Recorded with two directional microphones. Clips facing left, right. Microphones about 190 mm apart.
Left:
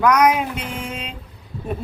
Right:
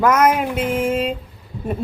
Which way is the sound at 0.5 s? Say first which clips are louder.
Right 10 dB; 50° right (ahead or behind).